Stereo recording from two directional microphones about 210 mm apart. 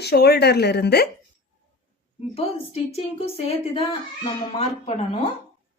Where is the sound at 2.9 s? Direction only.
30° left (ahead or behind).